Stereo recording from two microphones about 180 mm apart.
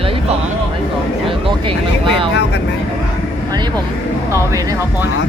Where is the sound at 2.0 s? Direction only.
30° right (ahead or behind).